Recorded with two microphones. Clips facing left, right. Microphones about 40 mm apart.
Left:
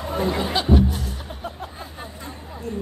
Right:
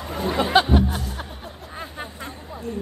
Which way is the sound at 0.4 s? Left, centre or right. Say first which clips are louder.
Right 5 dB; right.